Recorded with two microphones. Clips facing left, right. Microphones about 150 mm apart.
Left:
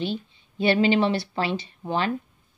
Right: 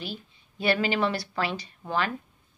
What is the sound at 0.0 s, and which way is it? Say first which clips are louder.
A woman's voice: left 9 dB; 25° left (ahead or behind).